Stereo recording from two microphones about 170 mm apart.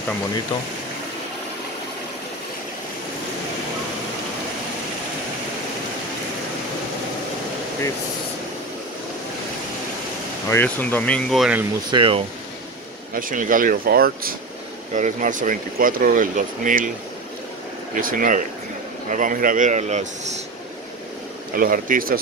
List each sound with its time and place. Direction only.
10.5 s speech: 10° left (ahead or behind)
11.9 s speech: 30° right (ahead or behind)
13.1 s speech: 55° right (ahead or behind)
15.0 s speech: 50° right (ahead or behind)
17.9 s speech: 55° right (ahead or behind)
21.5 s speech: 55° right (ahead or behind)